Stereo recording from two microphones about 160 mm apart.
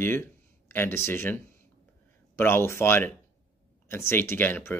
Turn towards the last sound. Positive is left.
turn(degrees=15)  # may be behind; listen again after turning